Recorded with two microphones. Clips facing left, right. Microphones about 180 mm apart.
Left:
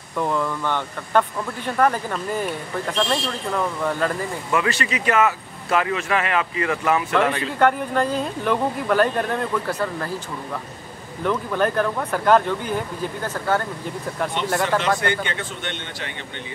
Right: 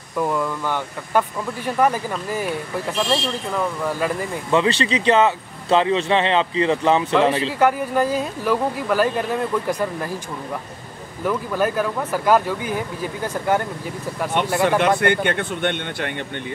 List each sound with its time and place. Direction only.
0.2 s a woman's voice: 5° right (ahead or behind)
4.5 s speech: 25° right (ahead or behind)
7.5 s a woman's voice: 10° right (ahead or behind)
11.2 s a woman's voice: 5° right (ahead or behind)
14.4 s speech: 55° right (ahead or behind)